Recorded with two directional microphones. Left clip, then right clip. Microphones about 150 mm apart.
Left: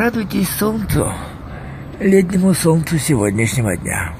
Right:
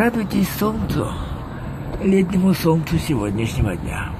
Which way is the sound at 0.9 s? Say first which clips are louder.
Left 5 dB; 25° left (ahead or behind).